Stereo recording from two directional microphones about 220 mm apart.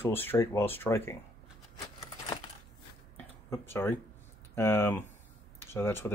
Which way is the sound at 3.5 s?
10° left (ahead or behind).